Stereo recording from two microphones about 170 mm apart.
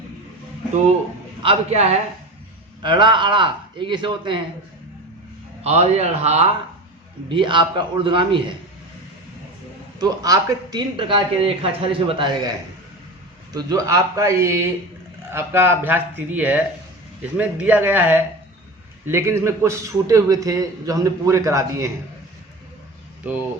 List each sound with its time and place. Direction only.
1.4 s a man's voice: 35° right (ahead or behind)
5.6 s speech: 40° right (ahead or behind)
7.3 s a man's voice: 30° right (ahead or behind)
10.0 s a man's voice: 20° right (ahead or behind)
13.5 s a man's voice: 20° right (ahead or behind)